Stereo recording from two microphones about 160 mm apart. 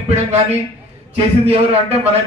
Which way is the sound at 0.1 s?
45° right (ahead or behind).